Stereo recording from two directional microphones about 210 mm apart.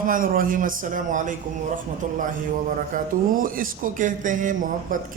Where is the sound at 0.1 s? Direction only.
40° right (ahead or behind).